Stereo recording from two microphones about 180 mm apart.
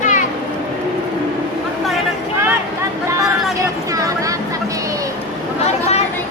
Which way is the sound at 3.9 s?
20° right (ahead or behind).